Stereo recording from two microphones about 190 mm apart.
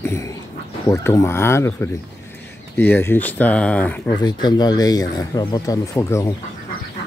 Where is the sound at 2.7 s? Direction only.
10° left (ahead or behind).